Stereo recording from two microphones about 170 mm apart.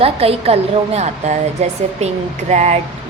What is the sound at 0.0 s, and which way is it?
A woman's voice, 35° right (ahead or behind).